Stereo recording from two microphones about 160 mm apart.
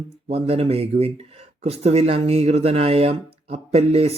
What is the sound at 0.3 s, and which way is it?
Speech, 40° right (ahead or behind).